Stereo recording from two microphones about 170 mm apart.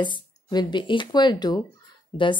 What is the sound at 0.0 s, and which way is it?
Speech, 25° left (ahead or behind).